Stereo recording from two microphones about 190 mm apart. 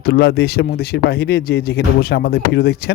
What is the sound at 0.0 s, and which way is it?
Speech, 60° left (ahead or behind).